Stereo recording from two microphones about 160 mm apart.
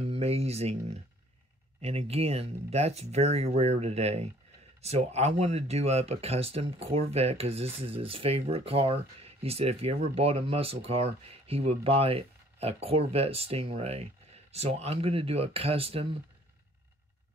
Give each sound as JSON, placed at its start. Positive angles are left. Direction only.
{"t": 0.0, "sound": "speech", "side_deg": -40}